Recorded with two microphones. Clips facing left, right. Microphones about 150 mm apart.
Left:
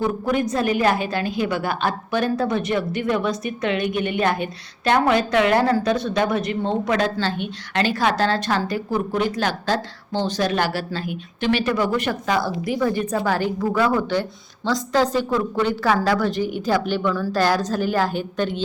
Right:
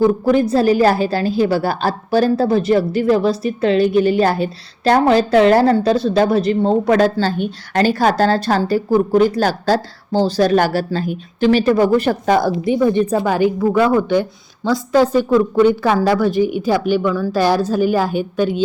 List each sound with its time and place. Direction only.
0.0 s a woman's voice: 35° right (ahead or behind)
12.6 s a woman's voice: 25° right (ahead or behind)
13.2 s a woman's voice: 15° right (ahead or behind)